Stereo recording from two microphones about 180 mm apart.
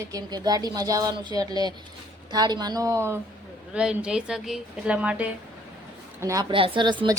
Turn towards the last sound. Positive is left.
turn(degrees=-25)  # may be behind; listen again after turning